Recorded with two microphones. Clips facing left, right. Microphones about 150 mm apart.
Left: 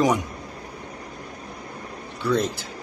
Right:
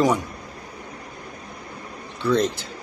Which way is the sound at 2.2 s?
5° left (ahead or behind).